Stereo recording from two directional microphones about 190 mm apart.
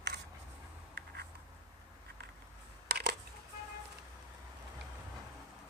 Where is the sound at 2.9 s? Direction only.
60° right (ahead or behind).